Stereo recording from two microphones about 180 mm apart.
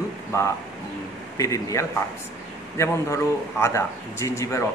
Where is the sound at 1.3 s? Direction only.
20° left (ahead or behind).